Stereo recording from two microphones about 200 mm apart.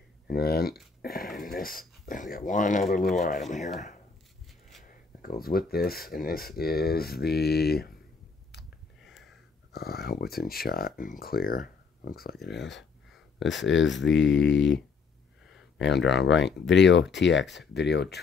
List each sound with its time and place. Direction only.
0.3 s speech: 50° left (ahead or behind)
4.5 s a sound: centre (ahead or behind)
4.8 s speech: 45° left (ahead or behind)
9.0 s a sound: centre (ahead or behind)
9.7 s speech: 50° left (ahead or behind); by 14.8 s 65° left (ahead or behind)
15.8 s speech: 60° left (ahead or behind)